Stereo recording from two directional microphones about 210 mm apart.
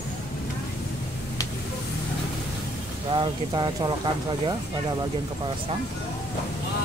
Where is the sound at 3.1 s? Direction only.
20° right (ahead or behind).